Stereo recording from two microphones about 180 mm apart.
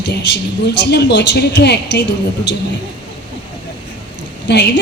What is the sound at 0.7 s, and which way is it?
A woman's voice, 70° left (ahead or behind).